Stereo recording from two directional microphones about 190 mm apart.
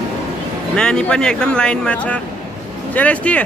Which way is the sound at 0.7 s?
5° left (ahead or behind).